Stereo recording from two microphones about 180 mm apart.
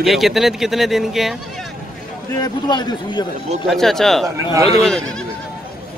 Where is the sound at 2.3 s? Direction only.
20° left (ahead or behind).